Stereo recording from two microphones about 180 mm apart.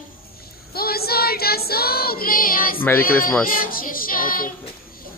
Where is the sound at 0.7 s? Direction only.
60° left (ahead or behind).